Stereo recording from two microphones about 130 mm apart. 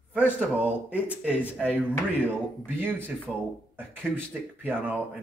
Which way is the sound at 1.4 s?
15° left (ahead or behind).